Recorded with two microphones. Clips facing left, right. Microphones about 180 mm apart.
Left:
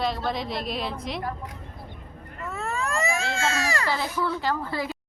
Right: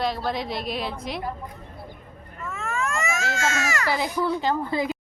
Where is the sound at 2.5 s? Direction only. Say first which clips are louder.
Even; 35° left (ahead or behind).